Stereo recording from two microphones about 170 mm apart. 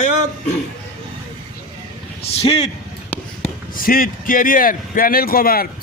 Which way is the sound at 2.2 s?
35° left (ahead or behind).